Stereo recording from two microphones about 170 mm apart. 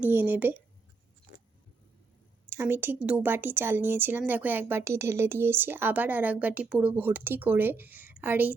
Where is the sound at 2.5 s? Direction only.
15° right (ahead or behind).